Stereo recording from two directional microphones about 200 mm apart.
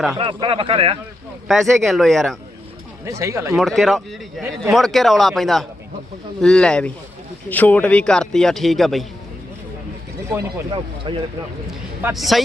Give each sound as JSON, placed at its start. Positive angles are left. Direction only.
{"t": 0.2, "sound": "speech", "side_deg": -25}
{"t": 1.5, "sound": "a man's voice", "side_deg": 0}
{"t": 3.1, "sound": "speech", "side_deg": -15}
{"t": 3.5, "sound": "a man's voice", "side_deg": 0}
{"t": 10.7, "sound": "speech", "side_deg": -25}
{"t": 12.1, "sound": "a man's voice", "side_deg": 0}